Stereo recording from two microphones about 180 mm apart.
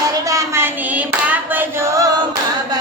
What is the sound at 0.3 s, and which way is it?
Hands, 15° right (ahead or behind).